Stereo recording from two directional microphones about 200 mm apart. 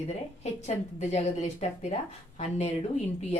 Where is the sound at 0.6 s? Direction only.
35° left (ahead or behind).